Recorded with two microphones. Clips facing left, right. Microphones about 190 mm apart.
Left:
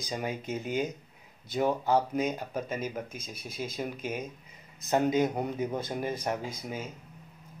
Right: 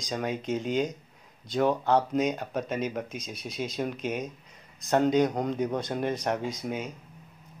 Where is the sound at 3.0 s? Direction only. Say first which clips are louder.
Right 4 dB; 50° left (ahead or behind).